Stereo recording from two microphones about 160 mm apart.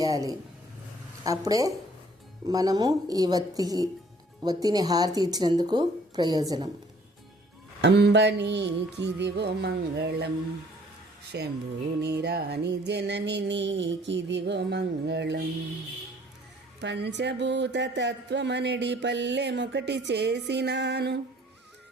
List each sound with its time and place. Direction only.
0.0 s a sound: 20° right (ahead or behind)
1.2 s speech: 20° right (ahead or behind)
7.8 s speech: 90° right
11.3 s speech: 90° right
16.8 s speech: 90° right